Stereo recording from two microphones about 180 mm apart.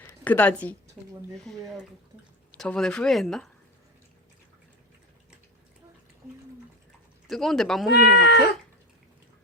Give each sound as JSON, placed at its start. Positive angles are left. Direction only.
{"t": 0.3, "sound": "a woman's voice", "side_deg": 10}
{"t": 1.5, "sound": "speech", "side_deg": -5}
{"t": 7.3, "sound": "speech", "side_deg": 0}
{"t": 7.9, "sound": "speech", "side_deg": 60}